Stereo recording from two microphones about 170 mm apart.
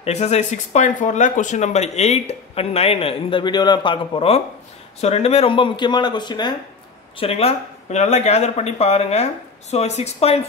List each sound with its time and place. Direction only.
0.0 s speech: 40° left (ahead or behind)